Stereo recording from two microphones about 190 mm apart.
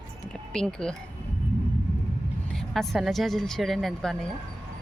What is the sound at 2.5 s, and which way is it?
A woman's voice, centre (ahead or behind).